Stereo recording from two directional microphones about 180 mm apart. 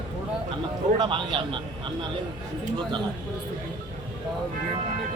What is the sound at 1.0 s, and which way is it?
Speech, 25° right (ahead or behind).